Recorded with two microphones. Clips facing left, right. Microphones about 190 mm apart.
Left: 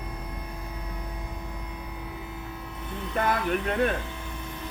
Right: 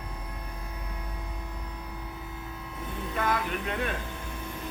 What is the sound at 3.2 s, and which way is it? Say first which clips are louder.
Speech: left 4 dB; 45° left (ahead or behind).